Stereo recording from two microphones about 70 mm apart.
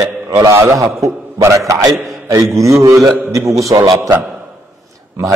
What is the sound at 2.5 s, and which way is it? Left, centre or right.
A man's voice, right.